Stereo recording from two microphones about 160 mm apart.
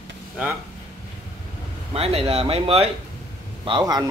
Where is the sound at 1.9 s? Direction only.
40° right (ahead or behind).